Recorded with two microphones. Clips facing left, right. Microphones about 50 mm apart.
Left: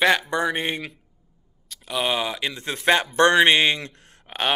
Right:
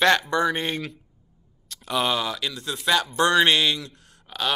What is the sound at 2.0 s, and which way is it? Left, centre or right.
A man's voice, left.